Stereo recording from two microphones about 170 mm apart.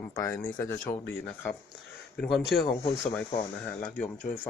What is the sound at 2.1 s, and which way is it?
Speech, centre (ahead or behind).